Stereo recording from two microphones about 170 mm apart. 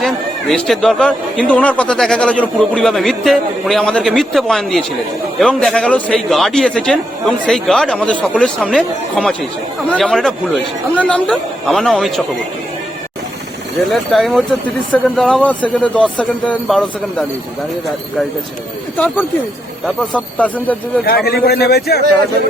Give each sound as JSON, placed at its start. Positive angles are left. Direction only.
{"t": 0.0, "sound": "speech", "side_deg": 0}
{"t": 13.9, "sound": "speech", "side_deg": 0}
{"t": 18.9, "sound": "speech", "side_deg": 10}
{"t": 21.2, "sound": "a man's voice", "side_deg": 65}